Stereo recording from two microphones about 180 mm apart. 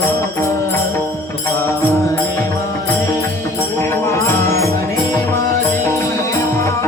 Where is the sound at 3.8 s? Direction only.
15° left (ahead or behind).